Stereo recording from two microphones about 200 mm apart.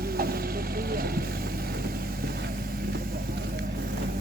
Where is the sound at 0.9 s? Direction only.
50° right (ahead or behind).